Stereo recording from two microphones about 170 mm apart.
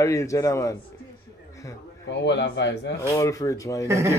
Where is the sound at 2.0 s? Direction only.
90° left.